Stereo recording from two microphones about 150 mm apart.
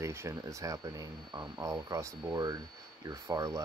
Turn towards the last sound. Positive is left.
turn(degrees=-20)  # may be behind; listen again after turning